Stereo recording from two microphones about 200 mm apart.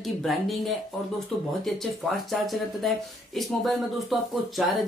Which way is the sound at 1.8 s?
Centre (ahead or behind).